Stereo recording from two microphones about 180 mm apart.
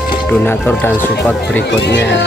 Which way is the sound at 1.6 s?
75° left (ahead or behind).